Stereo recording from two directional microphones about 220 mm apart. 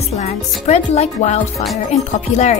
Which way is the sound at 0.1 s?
30° left (ahead or behind).